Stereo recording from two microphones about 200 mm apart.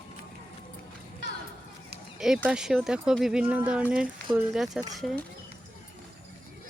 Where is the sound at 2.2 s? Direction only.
5° right (ahead or behind).